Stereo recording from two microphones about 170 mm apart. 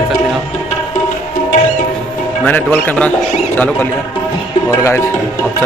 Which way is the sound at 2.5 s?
10° left (ahead or behind).